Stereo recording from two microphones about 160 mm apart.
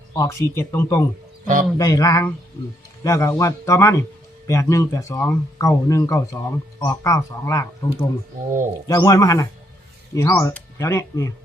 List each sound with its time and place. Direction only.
0.2 s speech: 20° left (ahead or behind)